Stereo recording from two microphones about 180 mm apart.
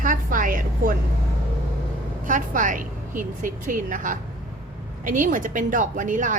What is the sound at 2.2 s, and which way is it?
A woman's voice, 45° right (ahead or behind).